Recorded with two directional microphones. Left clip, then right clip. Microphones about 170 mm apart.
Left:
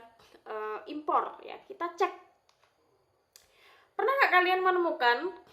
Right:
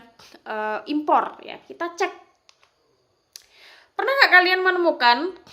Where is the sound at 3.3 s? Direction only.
45° right (ahead or behind).